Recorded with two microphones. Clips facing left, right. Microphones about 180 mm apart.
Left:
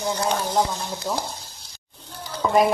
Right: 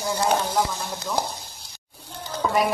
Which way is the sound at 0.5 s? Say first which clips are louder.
Left 2 dB; 25° left (ahead or behind).